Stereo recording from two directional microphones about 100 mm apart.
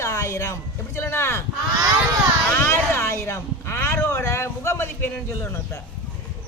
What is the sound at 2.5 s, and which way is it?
Speech, 25° left (ahead or behind).